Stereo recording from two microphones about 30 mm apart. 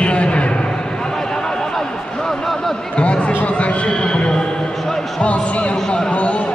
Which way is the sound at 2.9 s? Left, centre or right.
Left.